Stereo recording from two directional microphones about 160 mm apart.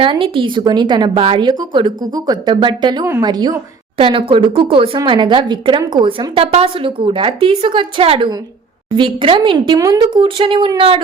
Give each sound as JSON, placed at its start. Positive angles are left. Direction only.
{"t": 0.0, "sound": "a woman's voice", "side_deg": -35}